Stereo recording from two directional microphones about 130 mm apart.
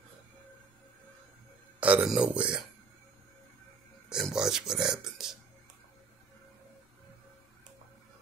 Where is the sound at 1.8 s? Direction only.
10° right (ahead or behind).